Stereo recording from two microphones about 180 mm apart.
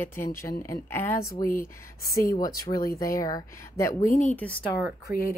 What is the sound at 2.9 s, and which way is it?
Speech, 20° left (ahead or behind).